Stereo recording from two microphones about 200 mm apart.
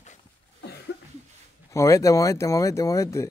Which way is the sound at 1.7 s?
15° left (ahead or behind).